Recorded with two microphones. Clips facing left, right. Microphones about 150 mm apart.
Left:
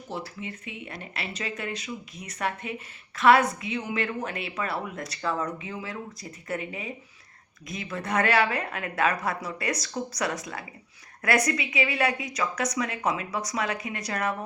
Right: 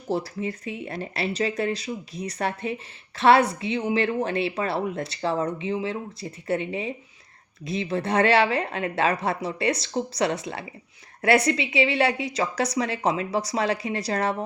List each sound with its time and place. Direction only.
0.1 s a woman's voice: 35° right (ahead or behind)